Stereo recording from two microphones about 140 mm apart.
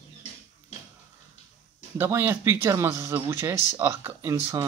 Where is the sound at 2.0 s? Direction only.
15° right (ahead or behind).